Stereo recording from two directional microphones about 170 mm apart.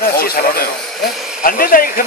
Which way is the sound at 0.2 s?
65° left (ahead or behind).